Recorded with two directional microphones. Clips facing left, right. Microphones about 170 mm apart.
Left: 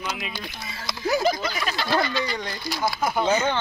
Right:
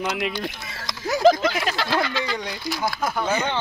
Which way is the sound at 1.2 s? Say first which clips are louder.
Right 7 dB; 90° right.